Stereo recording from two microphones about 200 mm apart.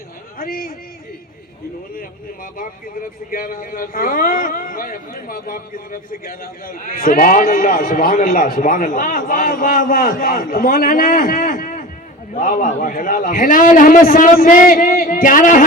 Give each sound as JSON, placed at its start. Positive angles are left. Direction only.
{"t": 0.3, "sound": "speech", "side_deg": 45}
{"t": 2.0, "sound": "speech", "side_deg": 45}